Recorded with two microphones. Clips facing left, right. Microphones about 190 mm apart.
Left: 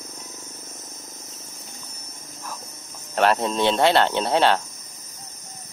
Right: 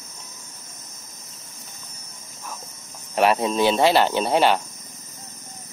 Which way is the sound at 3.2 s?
5° right (ahead or behind).